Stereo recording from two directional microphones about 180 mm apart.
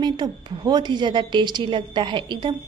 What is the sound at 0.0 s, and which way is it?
A woman's voice, 25° right (ahead or behind).